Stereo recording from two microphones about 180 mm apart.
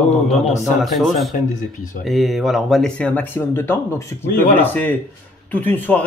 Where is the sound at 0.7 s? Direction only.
Centre (ahead or behind).